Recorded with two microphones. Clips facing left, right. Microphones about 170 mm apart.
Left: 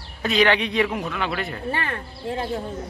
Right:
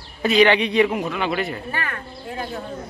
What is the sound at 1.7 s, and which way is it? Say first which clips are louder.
Speech: left 2 dB; 30° left (ahead or behind).